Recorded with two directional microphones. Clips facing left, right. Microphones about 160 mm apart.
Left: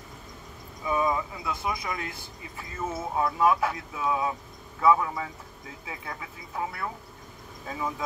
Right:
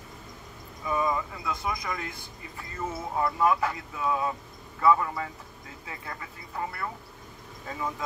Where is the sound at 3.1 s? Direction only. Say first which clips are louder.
Left 1 dB; 5° left (ahead or behind).